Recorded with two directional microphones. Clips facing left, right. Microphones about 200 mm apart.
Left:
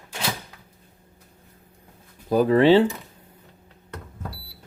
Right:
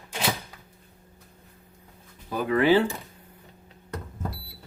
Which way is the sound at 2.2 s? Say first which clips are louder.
Left 8 dB; 40° left (ahead or behind).